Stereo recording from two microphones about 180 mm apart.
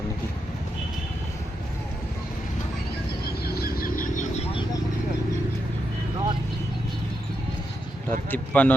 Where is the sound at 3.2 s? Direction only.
60° left (ahead or behind); by 4.4 s 45° left (ahead or behind).